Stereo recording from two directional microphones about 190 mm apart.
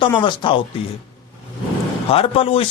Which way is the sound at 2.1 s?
30° left (ahead or behind).